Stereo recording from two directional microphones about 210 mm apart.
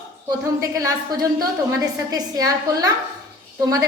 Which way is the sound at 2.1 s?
15° right (ahead or behind).